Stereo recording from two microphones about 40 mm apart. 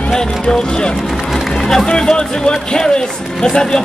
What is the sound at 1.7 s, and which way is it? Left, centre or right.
Speech, centre.